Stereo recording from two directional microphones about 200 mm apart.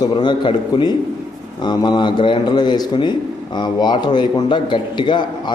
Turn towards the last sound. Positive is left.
turn(degrees=20)  # may be behind; listen again after turning